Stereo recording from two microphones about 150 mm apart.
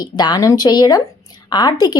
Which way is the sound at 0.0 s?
25° left (ahead or behind).